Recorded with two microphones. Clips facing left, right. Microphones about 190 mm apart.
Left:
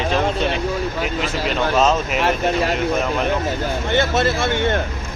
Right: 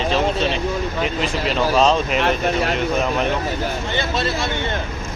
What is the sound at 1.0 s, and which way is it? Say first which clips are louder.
Speech: right 1 dB; centre (ahead or behind).